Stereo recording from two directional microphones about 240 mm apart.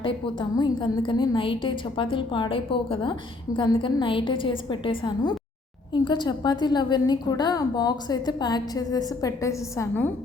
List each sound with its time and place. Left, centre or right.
0.0 s a woman's voice: centre